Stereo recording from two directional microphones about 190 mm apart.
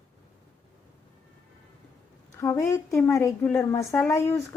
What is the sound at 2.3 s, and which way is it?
Speech, 15° left (ahead or behind).